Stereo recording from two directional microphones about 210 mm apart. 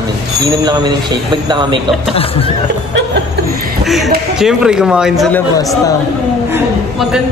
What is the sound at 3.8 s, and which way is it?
Speech, centre (ahead or behind).